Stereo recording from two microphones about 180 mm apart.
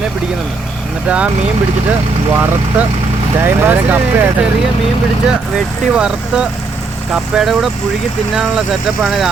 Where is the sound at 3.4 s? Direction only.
10° right (ahead or behind).